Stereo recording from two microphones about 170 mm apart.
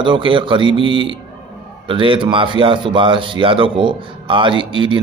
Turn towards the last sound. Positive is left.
turn(degrees=-30)  # may be behind; listen again after turning